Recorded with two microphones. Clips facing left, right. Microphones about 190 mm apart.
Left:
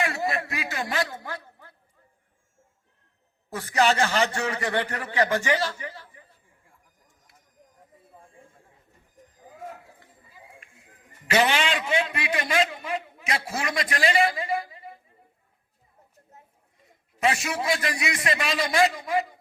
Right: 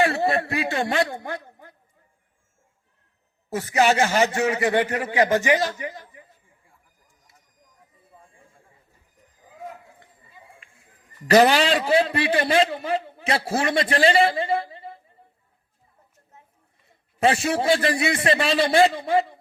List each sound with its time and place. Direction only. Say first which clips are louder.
0.0 s a man's voice: right 6 dB; 35° right (ahead or behind)
3.5 s a man's voice: right 3 dB; 15° right (ahead or behind)
9.5 s a sound: left 2 dB; 50° left (ahead or behind)
11.2 s a man's voice: right 7 dB; 40° right (ahead or behind)
16.8 s a man's voice: right 4 dB; 30° right (ahead or behind)